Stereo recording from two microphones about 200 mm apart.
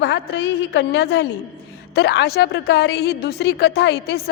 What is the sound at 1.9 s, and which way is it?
A woman's voice, 55° left (ahead or behind).